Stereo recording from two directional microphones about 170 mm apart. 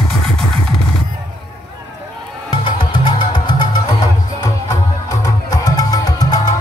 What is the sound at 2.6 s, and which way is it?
Music, 30° left (ahead or behind).